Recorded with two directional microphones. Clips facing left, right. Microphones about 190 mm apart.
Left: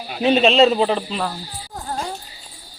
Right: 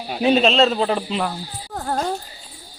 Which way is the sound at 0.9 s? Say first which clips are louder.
Right 1 dB; 15° right (ahead or behind).